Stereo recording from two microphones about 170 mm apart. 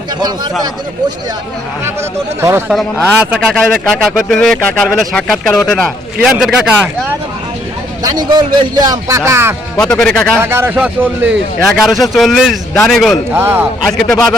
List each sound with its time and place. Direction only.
0.2 s a man's voice: 25° right (ahead or behind)
1.8 s a man's voice: 15° right (ahead or behind)
8.0 s a man's voice: 25° right (ahead or behind)
9.8 s a man's voice: 5° left (ahead or behind)
10.4 s a man's voice: 15° right (ahead or behind)
13.3 s speech: 15° right (ahead or behind)
13.8 s a man's voice: centre (ahead or behind)